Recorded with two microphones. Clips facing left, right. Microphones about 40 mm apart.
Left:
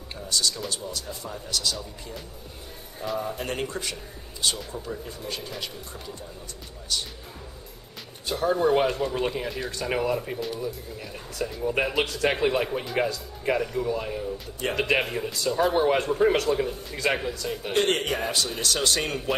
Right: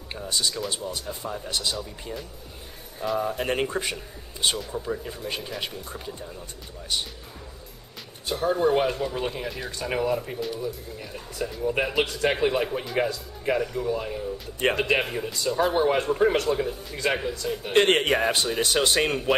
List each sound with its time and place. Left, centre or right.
0.1 s a sound: right
0.7 s speech: right
3.2 s speech: centre
8.3 s speech: centre
17.7 s a man's voice: right